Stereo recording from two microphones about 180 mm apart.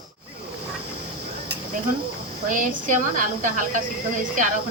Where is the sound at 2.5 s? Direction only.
45° right (ahead or behind).